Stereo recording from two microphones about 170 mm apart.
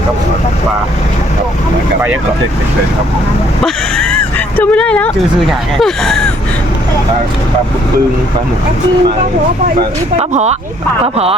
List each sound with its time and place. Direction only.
3.6 s speech: 5° left (ahead or behind)
10.2 s speech: 40° right (ahead or behind)